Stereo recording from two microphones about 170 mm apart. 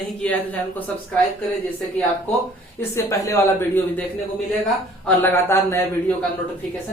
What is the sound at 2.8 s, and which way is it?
Speech, 15° left (ahead or behind).